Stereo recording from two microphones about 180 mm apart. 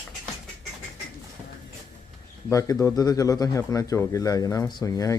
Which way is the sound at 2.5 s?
15° left (ahead or behind).